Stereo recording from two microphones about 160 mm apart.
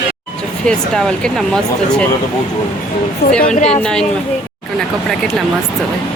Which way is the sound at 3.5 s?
45° left (ahead or behind).